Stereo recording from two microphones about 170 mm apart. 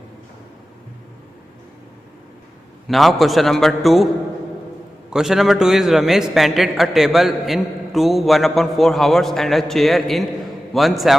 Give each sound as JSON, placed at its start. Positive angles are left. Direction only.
{"t": 2.8, "sound": "a man's voice", "side_deg": 0}
{"t": 5.1, "sound": "a man's voice", "side_deg": 0}